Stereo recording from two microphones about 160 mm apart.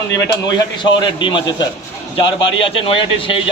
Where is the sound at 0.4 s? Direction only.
30° left (ahead or behind).